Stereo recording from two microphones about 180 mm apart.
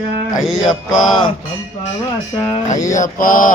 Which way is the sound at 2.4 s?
25° left (ahead or behind).